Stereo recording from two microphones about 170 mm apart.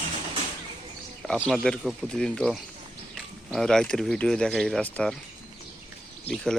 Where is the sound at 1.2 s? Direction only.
5° left (ahead or behind).